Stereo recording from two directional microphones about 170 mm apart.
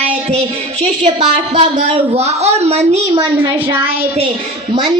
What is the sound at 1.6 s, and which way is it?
A woman's voice, 40° right (ahead or behind).